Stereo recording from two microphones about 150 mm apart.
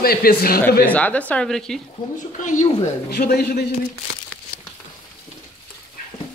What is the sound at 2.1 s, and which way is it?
Speech, 55° left (ahead or behind).